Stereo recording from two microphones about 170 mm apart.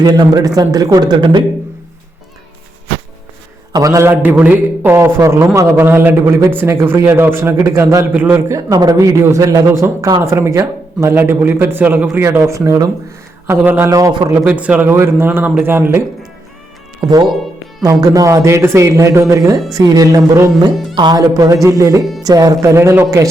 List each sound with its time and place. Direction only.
0.0 s a man's voice: 25° right (ahead or behind)
3.7 s a man's voice: 20° right (ahead or behind)
14.4 s a man's voice: 10° right (ahead or behind)
17.0 s a man's voice: 25° right (ahead or behind)